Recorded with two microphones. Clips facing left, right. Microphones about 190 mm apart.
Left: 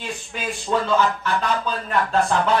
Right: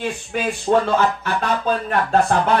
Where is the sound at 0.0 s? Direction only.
55° right (ahead or behind).